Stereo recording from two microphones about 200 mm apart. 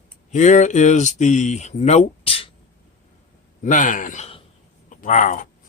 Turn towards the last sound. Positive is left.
turn(degrees=40)  # may be behind; listen again after turning